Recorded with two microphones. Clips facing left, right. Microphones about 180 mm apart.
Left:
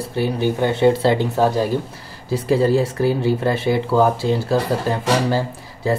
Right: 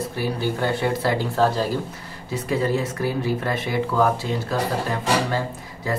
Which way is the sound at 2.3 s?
30° left (ahead or behind).